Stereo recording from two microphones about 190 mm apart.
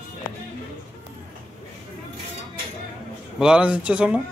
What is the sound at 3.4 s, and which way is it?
Speech, 5° right (ahead or behind).